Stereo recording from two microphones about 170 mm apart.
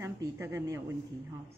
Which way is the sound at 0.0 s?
15° right (ahead or behind).